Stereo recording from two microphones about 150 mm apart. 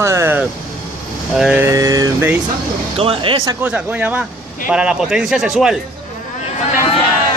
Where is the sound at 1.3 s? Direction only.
5° right (ahead or behind).